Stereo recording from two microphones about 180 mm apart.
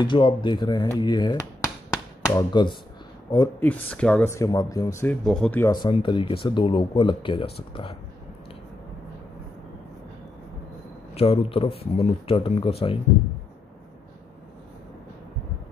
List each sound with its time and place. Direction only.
0.0 s speech: 25° left (ahead or behind)
3.6 s speech: 5° left (ahead or behind)
5.2 s speech: 5° left (ahead or behind)
5.7 s speech: 25° left (ahead or behind)
11.1 s speech: 30° left (ahead or behind)